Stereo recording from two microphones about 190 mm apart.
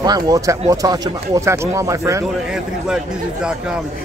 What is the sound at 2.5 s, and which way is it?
Speech, 5° right (ahead or behind).